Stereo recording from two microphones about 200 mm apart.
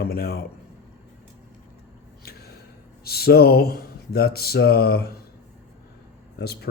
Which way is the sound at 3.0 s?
50° left (ahead or behind).